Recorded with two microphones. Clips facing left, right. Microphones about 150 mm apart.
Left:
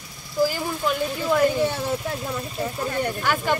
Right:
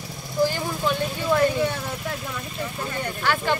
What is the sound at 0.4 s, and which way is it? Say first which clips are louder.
Vehicle: even; 5° left (ahead or behind).